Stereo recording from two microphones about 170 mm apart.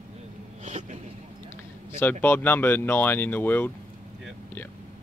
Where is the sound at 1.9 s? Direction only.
10° left (ahead or behind).